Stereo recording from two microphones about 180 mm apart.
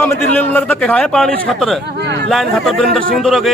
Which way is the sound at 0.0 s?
10° left (ahead or behind).